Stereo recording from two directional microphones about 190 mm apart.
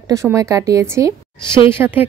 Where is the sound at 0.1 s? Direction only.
15° right (ahead or behind).